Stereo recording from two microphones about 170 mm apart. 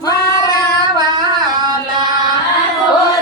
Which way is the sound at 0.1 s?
20° left (ahead or behind).